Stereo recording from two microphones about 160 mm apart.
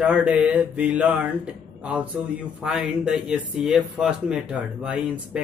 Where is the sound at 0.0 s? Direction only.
10° right (ahead or behind).